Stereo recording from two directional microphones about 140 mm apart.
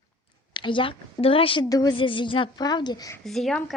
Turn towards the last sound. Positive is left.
turn(degrees=0)  # may be behind; listen again after turning